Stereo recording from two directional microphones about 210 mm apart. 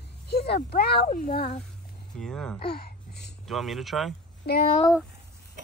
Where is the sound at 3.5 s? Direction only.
Centre (ahead or behind).